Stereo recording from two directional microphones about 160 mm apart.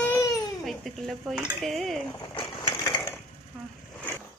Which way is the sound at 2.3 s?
30° left (ahead or behind).